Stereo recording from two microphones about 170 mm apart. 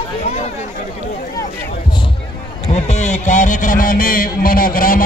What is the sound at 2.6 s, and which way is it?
A man's voice, 40° left (ahead or behind).